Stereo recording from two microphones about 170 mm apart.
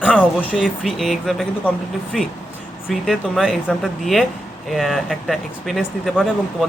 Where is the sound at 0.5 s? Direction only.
Centre (ahead or behind).